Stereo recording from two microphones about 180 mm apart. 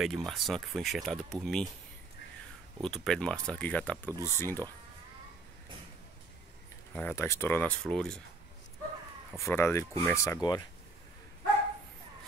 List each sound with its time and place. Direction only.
0.0 s speech: centre (ahead or behind)
2.8 s speech: centre (ahead or behind)
6.9 s speech: 10° left (ahead or behind)
9.4 s speech: 15° left (ahead or behind)